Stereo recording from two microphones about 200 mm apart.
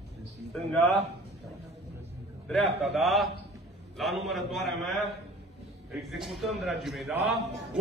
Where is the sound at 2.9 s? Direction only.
Centre (ahead or behind).